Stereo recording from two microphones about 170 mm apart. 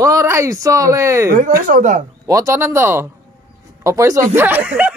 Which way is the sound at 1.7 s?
45° right (ahead or behind).